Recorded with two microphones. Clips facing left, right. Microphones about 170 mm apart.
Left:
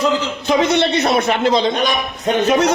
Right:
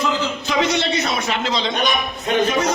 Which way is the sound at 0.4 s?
55° left (ahead or behind).